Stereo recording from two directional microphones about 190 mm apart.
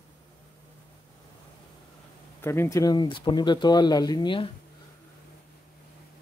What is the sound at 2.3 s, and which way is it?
Speech, 15° left (ahead or behind).